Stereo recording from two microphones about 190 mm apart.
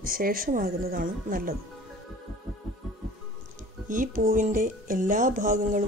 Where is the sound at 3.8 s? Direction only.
45° right (ahead or behind).